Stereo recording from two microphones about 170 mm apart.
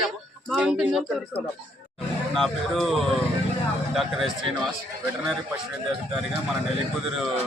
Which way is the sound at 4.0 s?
Centre (ahead or behind).